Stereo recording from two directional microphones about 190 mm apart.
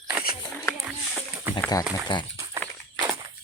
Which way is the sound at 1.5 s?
10° right (ahead or behind).